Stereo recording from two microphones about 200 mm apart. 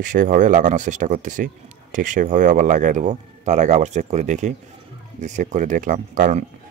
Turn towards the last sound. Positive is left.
turn(degrees=-40)  # may be behind; listen again after turning